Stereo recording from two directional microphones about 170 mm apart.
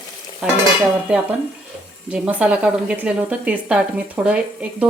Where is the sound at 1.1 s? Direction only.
10° right (ahead or behind).